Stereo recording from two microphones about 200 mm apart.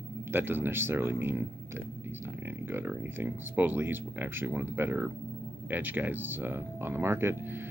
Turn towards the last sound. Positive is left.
turn(degrees=-10)  # may be behind; listen again after turning